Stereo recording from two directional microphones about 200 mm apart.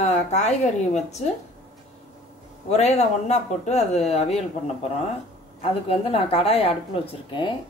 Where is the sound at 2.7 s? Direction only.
35° left (ahead or behind).